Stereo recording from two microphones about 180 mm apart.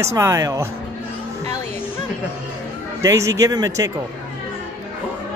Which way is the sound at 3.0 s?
15° right (ahead or behind).